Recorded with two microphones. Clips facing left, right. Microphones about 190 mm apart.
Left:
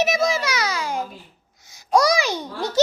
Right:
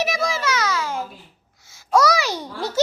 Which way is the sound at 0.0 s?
20° left (ahead or behind).